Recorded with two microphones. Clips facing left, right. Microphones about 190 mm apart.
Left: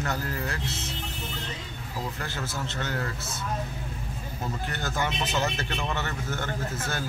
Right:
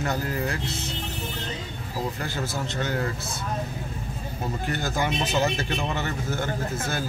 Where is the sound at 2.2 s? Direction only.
15° right (ahead or behind).